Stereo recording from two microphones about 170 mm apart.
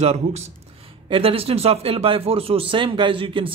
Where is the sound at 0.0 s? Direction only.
40° right (ahead or behind).